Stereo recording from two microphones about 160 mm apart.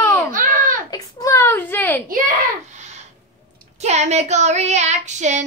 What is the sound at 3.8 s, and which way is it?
Speech, 45° right (ahead or behind).